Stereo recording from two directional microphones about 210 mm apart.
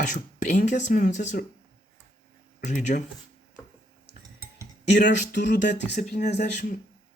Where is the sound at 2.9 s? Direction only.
40° left (ahead or behind).